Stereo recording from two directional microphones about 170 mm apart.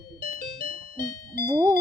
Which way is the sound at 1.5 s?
25° right (ahead or behind).